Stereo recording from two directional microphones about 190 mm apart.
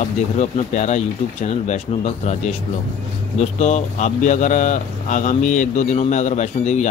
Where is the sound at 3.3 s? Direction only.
40° left (ahead or behind).